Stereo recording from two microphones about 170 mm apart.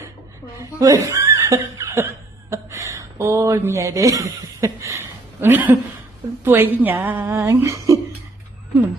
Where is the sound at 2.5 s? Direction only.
15° right (ahead or behind).